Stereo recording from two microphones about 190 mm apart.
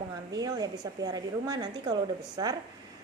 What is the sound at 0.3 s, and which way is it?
A woman's voice, 20° right (ahead or behind).